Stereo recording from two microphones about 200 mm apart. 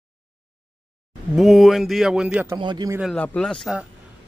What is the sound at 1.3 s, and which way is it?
Speech, centre (ahead or behind).